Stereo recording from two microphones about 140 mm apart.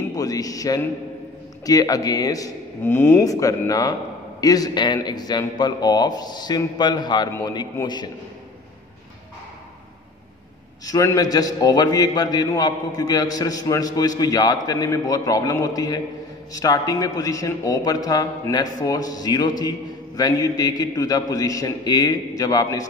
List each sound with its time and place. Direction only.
0.1 s a man's voice: 25° left (ahead or behind)
10.9 s a man's voice: 25° left (ahead or behind)